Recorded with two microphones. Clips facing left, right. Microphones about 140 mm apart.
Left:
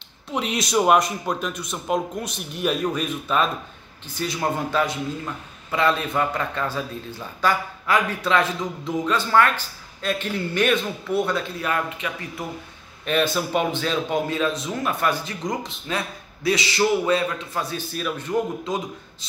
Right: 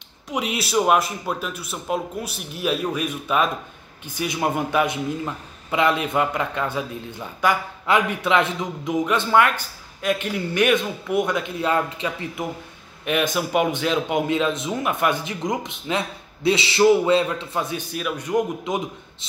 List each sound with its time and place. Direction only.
0.3 s a man's voice: 5° right (ahead or behind); by 12.4 s 25° right (ahead or behind)
13.0 s a man's voice: 15° right (ahead or behind)